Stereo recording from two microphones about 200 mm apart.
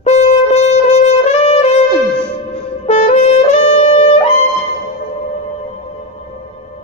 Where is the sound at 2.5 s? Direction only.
35° left (ahead or behind).